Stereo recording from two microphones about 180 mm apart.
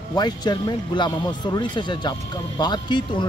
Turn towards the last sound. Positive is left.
turn(degrees=25)  # may be behind; listen again after turning